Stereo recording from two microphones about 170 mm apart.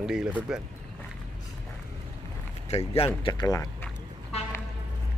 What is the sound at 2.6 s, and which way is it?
Speech, 35° left (ahead or behind).